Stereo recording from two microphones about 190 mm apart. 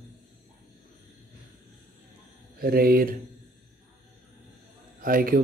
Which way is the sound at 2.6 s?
50° right (ahead or behind).